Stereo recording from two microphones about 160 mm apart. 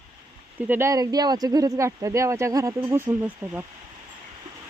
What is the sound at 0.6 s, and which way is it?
Speech, 15° right (ahead or behind).